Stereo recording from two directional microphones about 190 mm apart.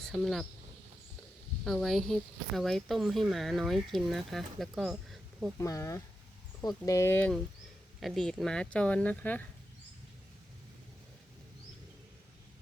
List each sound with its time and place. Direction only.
0.0 s speech: centre (ahead or behind)
1.6 s speech: centre (ahead or behind)
5.5 s speech: 15° left (ahead or behind)